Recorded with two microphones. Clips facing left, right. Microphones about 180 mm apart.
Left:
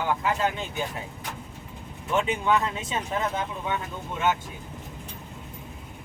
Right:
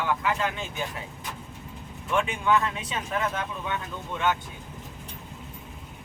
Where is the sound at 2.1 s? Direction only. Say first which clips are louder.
Even; 20° left (ahead or behind).